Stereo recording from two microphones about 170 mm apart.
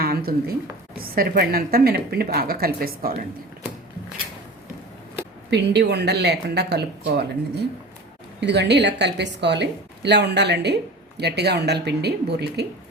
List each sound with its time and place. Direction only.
0.0 s a sound: 60° right (ahead or behind)
0.9 s speech: 60° right (ahead or behind)
5.5 s speech: 80° right
8.4 s a woman's voice: 90° right
11.2 s speech: 75° right (ahead or behind)